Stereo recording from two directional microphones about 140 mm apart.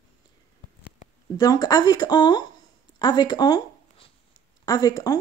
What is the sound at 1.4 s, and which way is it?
Speech, 25° left (ahead or behind).